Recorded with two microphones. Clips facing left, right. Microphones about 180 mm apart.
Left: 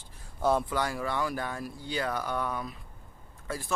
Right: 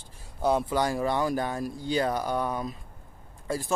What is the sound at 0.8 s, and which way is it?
Speech, 30° right (ahead or behind).